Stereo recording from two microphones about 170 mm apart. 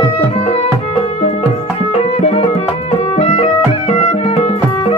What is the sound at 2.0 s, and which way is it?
Music, 40° left (ahead or behind).